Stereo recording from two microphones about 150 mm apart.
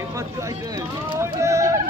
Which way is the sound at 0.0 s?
20° right (ahead or behind).